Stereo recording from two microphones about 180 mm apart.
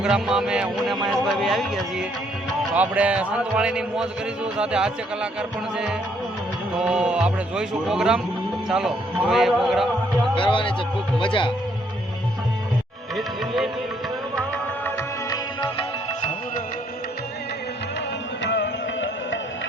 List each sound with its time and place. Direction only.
0.0 s a man's voice: 5° right (ahead or behind)
10.3 s speech: 30° left (ahead or behind)
13.1 s a man's voice: centre (ahead or behind)
14.8 s music: 15° left (ahead or behind)
18.4 s music: 80° left